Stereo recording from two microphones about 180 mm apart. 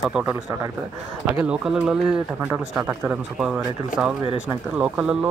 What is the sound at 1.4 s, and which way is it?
Speech, 5° right (ahead or behind).